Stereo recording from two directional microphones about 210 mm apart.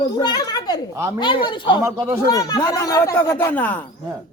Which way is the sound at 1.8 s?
15° right (ahead or behind).